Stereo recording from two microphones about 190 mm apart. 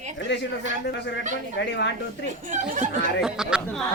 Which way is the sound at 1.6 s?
65° left (ahead or behind).